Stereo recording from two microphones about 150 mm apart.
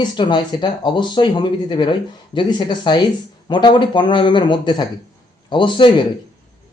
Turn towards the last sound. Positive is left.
turn(degrees=35)  # may be behind; listen again after turning